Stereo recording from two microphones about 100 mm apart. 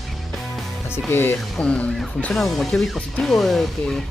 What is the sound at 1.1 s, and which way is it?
Speech, 20° left (ahead or behind).